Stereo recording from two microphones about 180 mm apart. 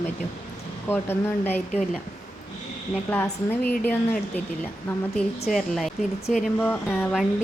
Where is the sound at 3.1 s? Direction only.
10° left (ahead or behind).